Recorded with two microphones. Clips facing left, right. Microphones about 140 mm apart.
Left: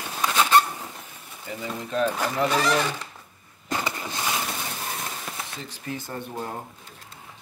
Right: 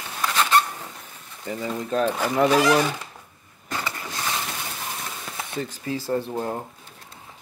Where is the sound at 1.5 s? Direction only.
40° right (ahead or behind).